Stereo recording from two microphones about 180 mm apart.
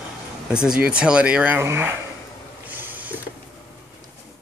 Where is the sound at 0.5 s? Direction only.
5° right (ahead or behind).